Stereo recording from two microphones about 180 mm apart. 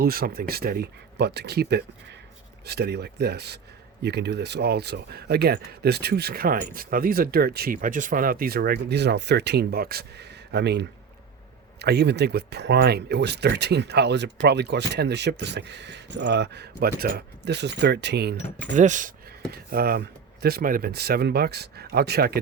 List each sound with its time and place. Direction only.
0.0 s speech: 55° right (ahead or behind)
18.8 s speech: 45° right (ahead or behind)
19.5 s speech: 55° right (ahead or behind)